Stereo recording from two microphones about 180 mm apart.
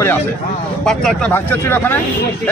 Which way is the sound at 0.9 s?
5° left (ahead or behind).